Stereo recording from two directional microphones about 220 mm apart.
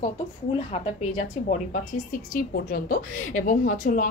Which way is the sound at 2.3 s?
40° left (ahead or behind).